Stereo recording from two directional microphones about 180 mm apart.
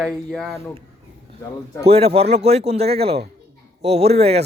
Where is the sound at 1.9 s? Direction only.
35° right (ahead or behind).